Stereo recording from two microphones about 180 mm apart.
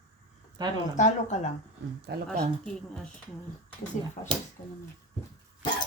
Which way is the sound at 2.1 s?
65° right (ahead or behind).